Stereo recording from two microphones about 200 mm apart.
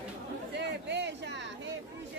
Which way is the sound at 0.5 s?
60° right (ahead or behind).